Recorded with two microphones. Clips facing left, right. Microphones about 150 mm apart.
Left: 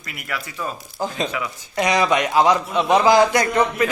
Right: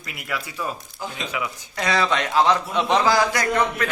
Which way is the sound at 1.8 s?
15° left (ahead or behind).